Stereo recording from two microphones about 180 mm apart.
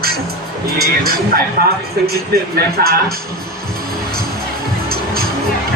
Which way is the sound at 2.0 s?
60° right (ahead or behind).